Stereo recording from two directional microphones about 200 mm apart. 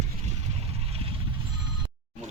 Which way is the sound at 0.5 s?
30° right (ahead or behind).